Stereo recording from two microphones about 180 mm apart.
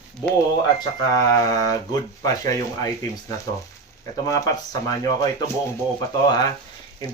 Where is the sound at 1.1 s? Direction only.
20° left (ahead or behind).